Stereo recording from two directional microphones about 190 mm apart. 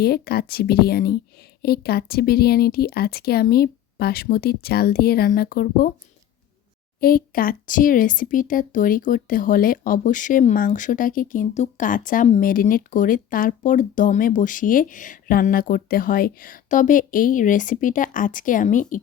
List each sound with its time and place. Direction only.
0.0 s speech: 55° left (ahead or behind)
7.0 s speech: 50° left (ahead or behind)